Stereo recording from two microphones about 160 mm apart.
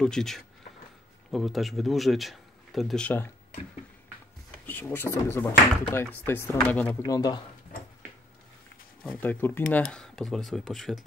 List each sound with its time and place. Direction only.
0.0 s speech: 5° left (ahead or behind)
4.6 s speech: 10° left (ahead or behind)
7.1 s speech: 25° left (ahead or behind)
9.0 s speech: 5° left (ahead or behind)